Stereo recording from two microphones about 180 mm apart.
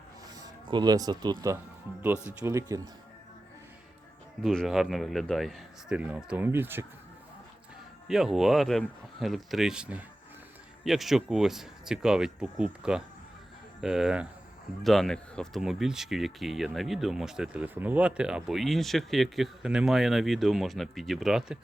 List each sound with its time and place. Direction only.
0.3 s speech: 25° right (ahead or behind)
4.4 s speech: centre (ahead or behind)
8.0 s speech: 5° right (ahead or behind)